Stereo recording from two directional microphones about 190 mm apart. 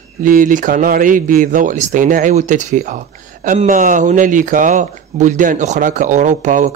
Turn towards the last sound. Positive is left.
turn(degrees=-40)  # may be behind; listen again after turning